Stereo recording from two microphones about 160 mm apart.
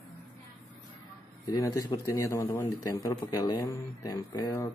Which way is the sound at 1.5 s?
25° left (ahead or behind).